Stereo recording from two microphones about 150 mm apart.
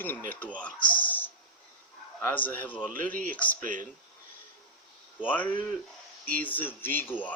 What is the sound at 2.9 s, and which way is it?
Speech, 65° right (ahead or behind).